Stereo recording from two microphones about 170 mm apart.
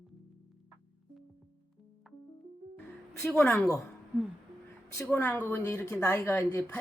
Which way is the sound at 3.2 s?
5° left (ahead or behind).